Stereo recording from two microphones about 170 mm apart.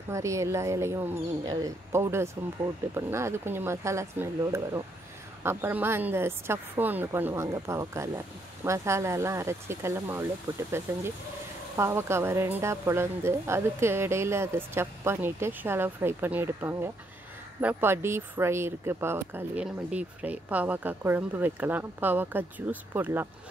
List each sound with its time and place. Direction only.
0.1 s speech: 15° right (ahead or behind)
11.7 s speech: 15° right (ahead or behind)